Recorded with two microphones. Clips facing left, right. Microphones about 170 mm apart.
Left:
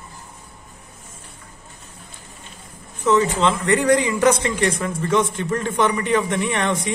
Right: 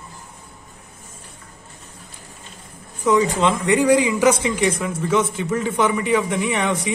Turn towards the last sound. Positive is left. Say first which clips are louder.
# right 1 dB
turn(degrees=-10)  # may be behind; listen again after turning